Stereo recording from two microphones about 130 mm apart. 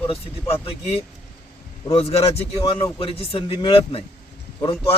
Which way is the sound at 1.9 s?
50° left (ahead or behind).